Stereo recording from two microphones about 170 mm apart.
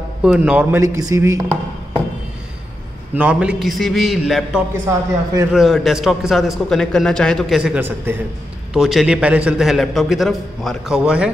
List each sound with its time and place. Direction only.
0.2 s a man's voice: 5° right (ahead or behind)
3.2 s a man's voice: 5° right (ahead or behind)
4.8 s a man's voice: 15° right (ahead or behind)
5.5 s a man's voice: centre (ahead or behind)